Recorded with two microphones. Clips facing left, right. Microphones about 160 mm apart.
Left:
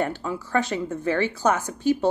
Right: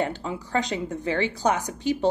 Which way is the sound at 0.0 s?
20° right (ahead or behind).